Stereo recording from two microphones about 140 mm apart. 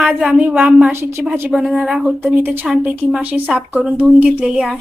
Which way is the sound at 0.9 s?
15° right (ahead or behind).